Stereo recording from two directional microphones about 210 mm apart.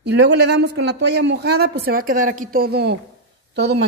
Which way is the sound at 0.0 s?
55° right (ahead or behind).